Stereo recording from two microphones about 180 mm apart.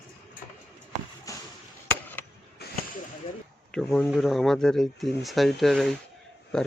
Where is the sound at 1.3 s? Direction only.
20° left (ahead or behind).